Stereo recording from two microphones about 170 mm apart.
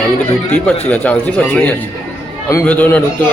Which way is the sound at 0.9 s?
10° left (ahead or behind).